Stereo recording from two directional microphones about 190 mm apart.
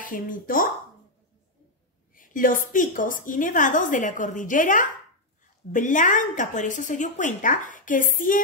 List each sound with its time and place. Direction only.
0.0 s a woman's voice: 45° left (ahead or behind)
2.1 s a woman's voice: 45° left (ahead or behind)